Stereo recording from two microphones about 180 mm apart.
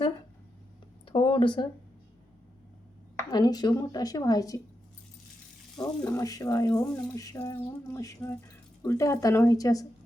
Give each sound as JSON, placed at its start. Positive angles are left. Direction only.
{"t": 1.0, "sound": "a sound", "side_deg": 30}
{"t": 3.2, "sound": "speech", "side_deg": 20}
{"t": 5.7, "sound": "speech", "side_deg": 5}
{"t": 6.1, "sound": "speech", "side_deg": 20}